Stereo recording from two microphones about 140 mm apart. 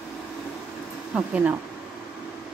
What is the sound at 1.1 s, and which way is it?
Speech, 10° right (ahead or behind).